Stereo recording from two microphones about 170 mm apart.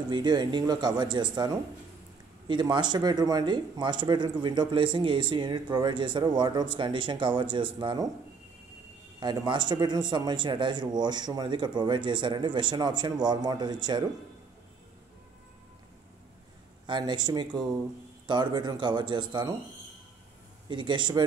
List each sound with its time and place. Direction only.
0.1 s speech: 25° right (ahead or behind)
9.2 s speech: 25° right (ahead or behind)
16.8 s speech: 25° right (ahead or behind)
20.6 s speech: 25° right (ahead or behind)